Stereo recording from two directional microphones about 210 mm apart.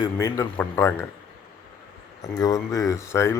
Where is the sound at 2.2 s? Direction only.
15° left (ahead or behind).